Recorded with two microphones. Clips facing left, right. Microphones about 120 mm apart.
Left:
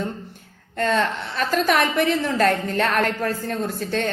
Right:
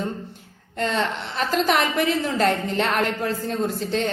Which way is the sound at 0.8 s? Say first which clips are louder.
Left 3 dB; 25° right (ahead or behind).